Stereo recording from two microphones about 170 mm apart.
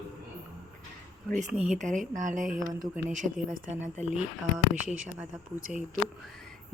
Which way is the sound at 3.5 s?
50° right (ahead or behind).